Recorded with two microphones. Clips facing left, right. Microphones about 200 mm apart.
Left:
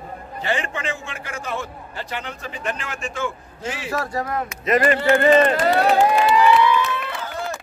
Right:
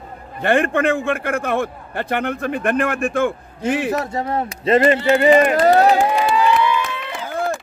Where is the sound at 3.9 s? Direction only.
25° right (ahead or behind).